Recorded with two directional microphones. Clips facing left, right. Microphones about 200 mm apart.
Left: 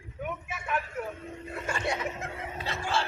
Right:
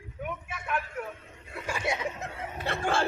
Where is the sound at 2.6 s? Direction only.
55° right (ahead or behind).